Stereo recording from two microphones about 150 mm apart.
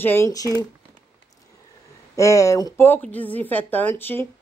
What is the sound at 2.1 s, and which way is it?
A woman's voice, 20° left (ahead or behind).